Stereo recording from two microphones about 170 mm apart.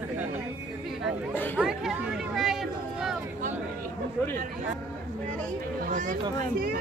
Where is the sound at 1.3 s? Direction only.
10° left (ahead or behind).